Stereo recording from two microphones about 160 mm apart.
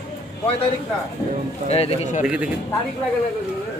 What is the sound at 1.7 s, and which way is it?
Speech, 40° left (ahead or behind).